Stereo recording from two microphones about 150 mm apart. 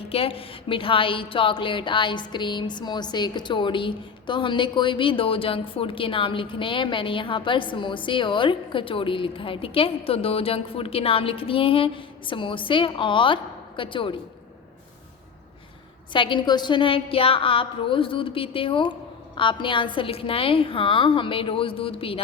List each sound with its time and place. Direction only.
0.1 s a woman's voice: 40° left (ahead or behind)
16.1 s a woman's voice: 35° left (ahead or behind)